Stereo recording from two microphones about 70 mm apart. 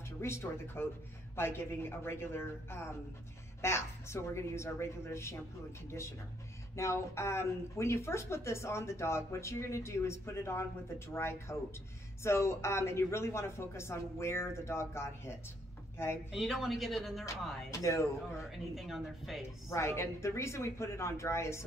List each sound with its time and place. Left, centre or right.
0.2 s speech: left
6.7 s speech: left
16.3 s speech: centre
17.7 s speech: left
18.5 s speech: centre
19.7 s speech: left